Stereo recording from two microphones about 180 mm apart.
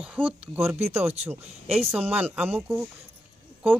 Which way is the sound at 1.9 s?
10° right (ahead or behind).